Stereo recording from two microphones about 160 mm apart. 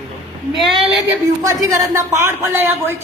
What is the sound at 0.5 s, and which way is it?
Speech, centre (ahead or behind).